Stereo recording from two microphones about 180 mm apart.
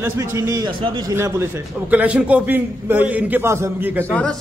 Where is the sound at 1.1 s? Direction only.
15° right (ahead or behind).